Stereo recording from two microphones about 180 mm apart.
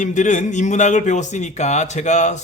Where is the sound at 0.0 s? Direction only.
45° left (ahead or behind).